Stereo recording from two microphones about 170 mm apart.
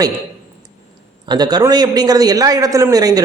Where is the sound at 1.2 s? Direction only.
25° right (ahead or behind).